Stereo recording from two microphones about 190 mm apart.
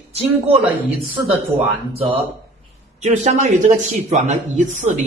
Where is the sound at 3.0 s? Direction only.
40° right (ahead or behind).